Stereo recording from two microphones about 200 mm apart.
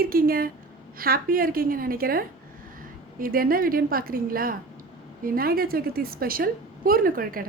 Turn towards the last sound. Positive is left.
turn(degrees=-45)  # may be behind; listen again after turning